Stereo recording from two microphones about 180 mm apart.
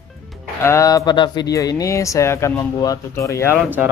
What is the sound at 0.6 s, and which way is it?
Speech, 15° left (ahead or behind).